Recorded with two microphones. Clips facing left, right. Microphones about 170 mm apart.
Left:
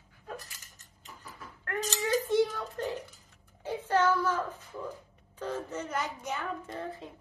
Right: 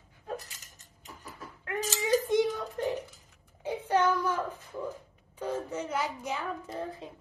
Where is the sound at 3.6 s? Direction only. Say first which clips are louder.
Right 1 dB; 15° right (ahead or behind).